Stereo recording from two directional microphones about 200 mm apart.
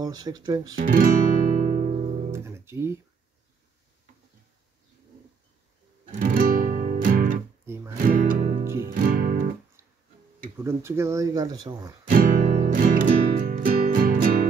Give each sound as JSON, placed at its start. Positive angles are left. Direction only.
{"t": 0.0, "sound": "speech", "side_deg": -20}
{"t": 0.8, "sound": "music", "side_deg": -45}
{"t": 2.3, "sound": "speech", "side_deg": -15}
{"t": 6.1, "sound": "music", "side_deg": -45}
{"t": 7.6, "sound": "music", "side_deg": -10}
{"t": 8.0, "sound": "music", "side_deg": -45}
{"t": 8.6, "sound": "music", "side_deg": -15}
{"t": 8.9, "sound": "music", "side_deg": -45}
{"t": 10.6, "sound": "speech", "side_deg": -15}
{"t": 12.1, "sound": "music", "side_deg": -45}